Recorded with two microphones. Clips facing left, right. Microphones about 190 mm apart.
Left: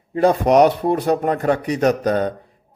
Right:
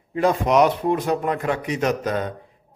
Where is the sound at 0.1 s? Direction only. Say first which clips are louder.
Left 4 dB; 35° left (ahead or behind).